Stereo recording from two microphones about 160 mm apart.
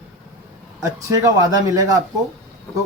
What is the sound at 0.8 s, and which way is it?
Speech, 20° right (ahead or behind).